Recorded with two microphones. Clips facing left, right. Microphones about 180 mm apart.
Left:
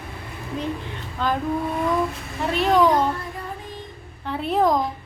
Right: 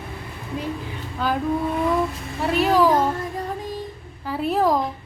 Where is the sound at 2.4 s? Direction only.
5° right (ahead or behind).